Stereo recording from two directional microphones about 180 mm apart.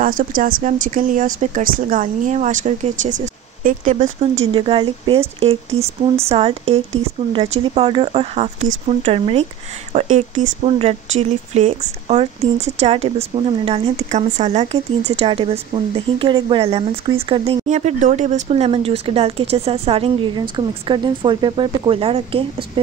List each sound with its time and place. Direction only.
0.0 s speech: 50° right (ahead or behind); by 22.4 s 30° right (ahead or behind)